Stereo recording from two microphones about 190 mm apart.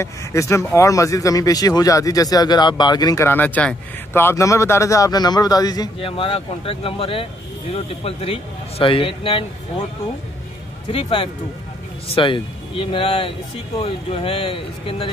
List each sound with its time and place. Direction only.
0.0 s speech: 15° left (ahead or behind)
10.9 s speech: 30° left (ahead or behind)